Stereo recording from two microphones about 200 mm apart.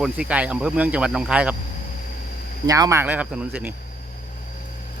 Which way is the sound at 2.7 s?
15° right (ahead or behind).